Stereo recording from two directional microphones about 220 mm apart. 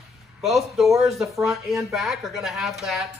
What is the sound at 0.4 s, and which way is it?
A woman's voice, centre (ahead or behind).